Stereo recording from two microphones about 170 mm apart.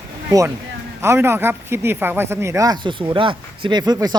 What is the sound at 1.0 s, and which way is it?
Speech, 15° right (ahead or behind).